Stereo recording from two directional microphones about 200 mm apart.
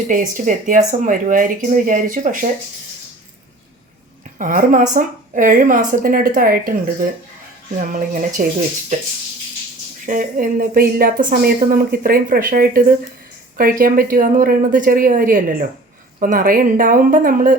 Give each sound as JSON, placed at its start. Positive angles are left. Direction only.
{"t": 0.1, "sound": "speech", "side_deg": -40}
{"t": 4.4, "sound": "a woman's voice", "side_deg": -40}
{"t": 10.1, "sound": "a woman's voice", "side_deg": -40}